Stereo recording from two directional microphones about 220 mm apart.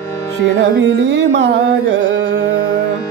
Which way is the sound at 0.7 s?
50° right (ahead or behind).